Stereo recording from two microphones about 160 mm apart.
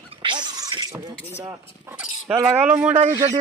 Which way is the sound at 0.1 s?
30° right (ahead or behind).